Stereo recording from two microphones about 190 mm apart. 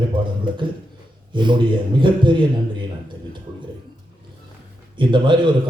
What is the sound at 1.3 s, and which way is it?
A man's voice, 25° right (ahead or behind).